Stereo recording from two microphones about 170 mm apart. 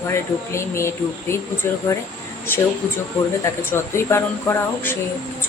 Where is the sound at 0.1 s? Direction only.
15° left (ahead or behind).